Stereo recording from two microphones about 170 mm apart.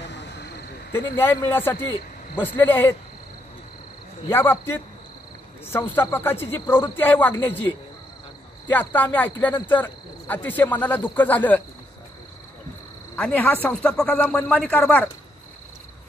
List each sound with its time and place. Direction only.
0.0 s insect: 90° left
0.9 s speech: 15° left (ahead or behind)
4.3 s speech: 15° left (ahead or behind)
8.6 s speech: 10° left (ahead or behind)
13.1 s speech: 10° left (ahead or behind)